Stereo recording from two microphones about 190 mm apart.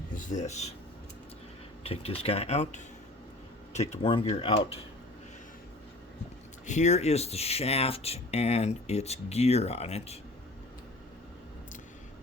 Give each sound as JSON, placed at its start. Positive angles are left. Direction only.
{"t": 0.1, "sound": "speech", "side_deg": 40}
{"t": 1.8, "sound": "speech", "side_deg": 30}
{"t": 6.7, "sound": "speech", "side_deg": 35}